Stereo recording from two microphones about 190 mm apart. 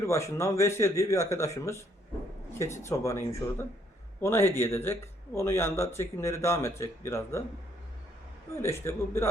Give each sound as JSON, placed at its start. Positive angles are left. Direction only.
{"t": 0.0, "sound": "speech", "side_deg": 15}
{"t": 2.8, "sound": "speech", "side_deg": 15}
{"t": 8.5, "sound": "speech", "side_deg": 15}